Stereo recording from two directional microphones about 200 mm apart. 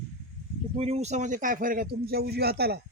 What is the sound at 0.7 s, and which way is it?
A man's voice, 30° right (ahead or behind).